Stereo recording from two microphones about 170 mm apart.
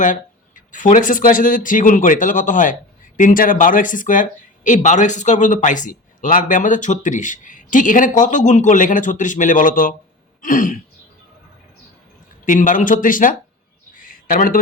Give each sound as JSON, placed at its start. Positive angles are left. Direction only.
{"t": 0.0, "sound": "speech", "side_deg": 50}
{"t": 10.4, "sound": "throat clearing", "side_deg": 55}
{"t": 12.5, "sound": "speech", "side_deg": 50}
{"t": 13.9, "sound": "a sound", "side_deg": 55}